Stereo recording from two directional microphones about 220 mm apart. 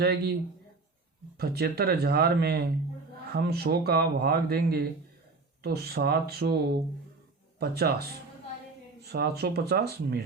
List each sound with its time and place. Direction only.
0.0 s speech: 45° right (ahead or behind)
1.4 s speech: 45° right (ahead or behind)
7.6 s speech: 45° right (ahead or behind)